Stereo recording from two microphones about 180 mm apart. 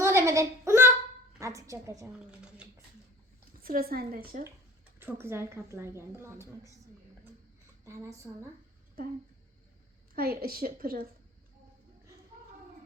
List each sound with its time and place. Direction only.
0.0 s a sound: 15° right (ahead or behind)
1.4 s a woman's voice: 15° right (ahead or behind)
2.2 s speech: 5° right (ahead or behind)
3.6 s a woman's voice: 55° right (ahead or behind)
4.9 s a woman's voice: 10° right (ahead or behind)
7.9 s a woman's voice: 15° right (ahead or behind)
10.2 s a woman's voice: 55° right (ahead or behind)